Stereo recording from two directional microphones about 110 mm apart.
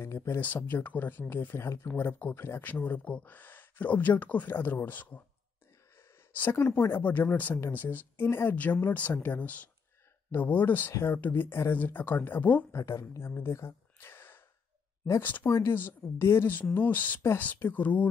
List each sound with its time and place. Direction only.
0.0 s speech: 25° left (ahead or behind)
6.3 s speech: 20° left (ahead or behind)
12.7 s speech: 25° left (ahead or behind)